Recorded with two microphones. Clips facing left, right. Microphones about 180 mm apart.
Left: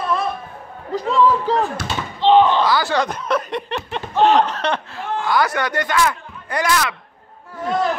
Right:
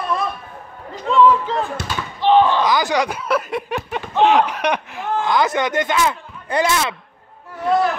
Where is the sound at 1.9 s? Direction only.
20° left (ahead or behind).